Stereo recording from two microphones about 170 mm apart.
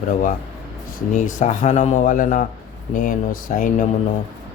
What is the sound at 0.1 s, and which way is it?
Speech, 45° left (ahead or behind).